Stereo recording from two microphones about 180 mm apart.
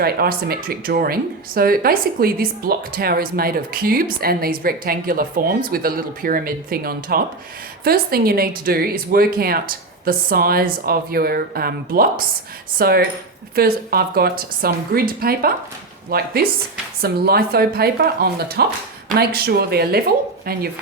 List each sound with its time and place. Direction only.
0.0 s speech: 60° right (ahead or behind)